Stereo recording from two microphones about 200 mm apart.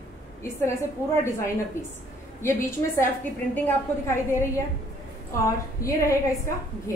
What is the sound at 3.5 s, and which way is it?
Speech, 10° left (ahead or behind).